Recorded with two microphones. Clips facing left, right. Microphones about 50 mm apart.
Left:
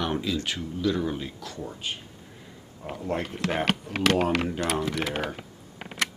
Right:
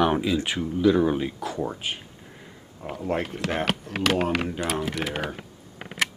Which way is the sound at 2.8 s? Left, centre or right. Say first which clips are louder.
Right 3 dB; centre.